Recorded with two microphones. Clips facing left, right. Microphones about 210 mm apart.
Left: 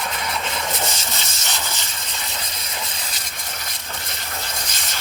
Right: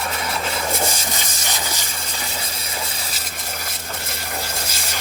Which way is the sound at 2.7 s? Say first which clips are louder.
Right 2 dB; 10° right (ahead or behind).